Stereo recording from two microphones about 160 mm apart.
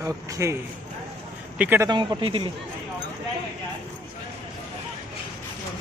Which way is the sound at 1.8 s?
30° right (ahead or behind).